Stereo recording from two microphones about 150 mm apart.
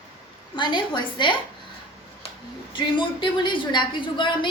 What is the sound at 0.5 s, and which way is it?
Speech, 30° left (ahead or behind).